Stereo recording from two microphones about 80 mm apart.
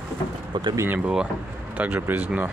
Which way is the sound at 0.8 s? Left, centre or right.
Right.